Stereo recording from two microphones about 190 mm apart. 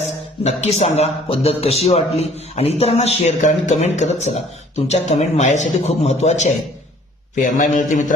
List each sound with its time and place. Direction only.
0.4 s a man's voice: 35° left (ahead or behind)